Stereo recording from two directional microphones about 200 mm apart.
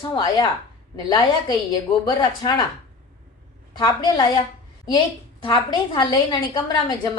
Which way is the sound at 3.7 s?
20° left (ahead or behind).